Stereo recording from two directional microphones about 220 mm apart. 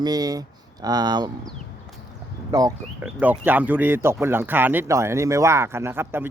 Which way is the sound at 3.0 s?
5° right (ahead or behind).